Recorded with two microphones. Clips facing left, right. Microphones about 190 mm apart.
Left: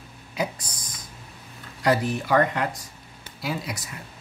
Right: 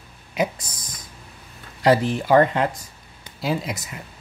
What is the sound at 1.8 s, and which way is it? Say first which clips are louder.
Speech: right 4 dB; 25° right (ahead or behind).